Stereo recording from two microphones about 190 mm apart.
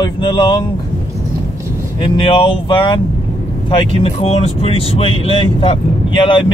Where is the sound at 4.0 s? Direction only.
30° left (ahead or behind).